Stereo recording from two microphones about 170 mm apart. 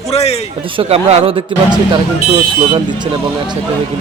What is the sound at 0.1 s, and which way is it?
Speech, 40° left (ahead or behind).